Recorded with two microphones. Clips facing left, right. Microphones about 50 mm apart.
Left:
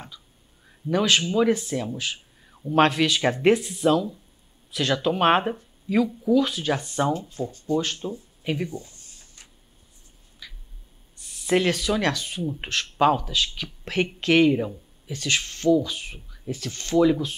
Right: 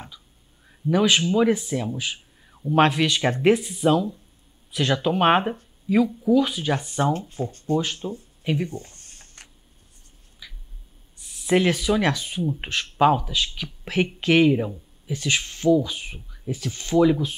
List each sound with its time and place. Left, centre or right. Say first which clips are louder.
0.7 s speech: right 2 dB; centre
7.1 s speech: right 1 dB; right
7.8 s speech: right 1 dB; centre
8.6 s a sound: even; right
10.4 s a sound: even; centre
11.1 s speech: right 2 dB; centre